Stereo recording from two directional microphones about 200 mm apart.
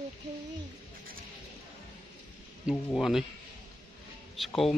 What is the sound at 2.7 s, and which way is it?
Speech, centre (ahead or behind).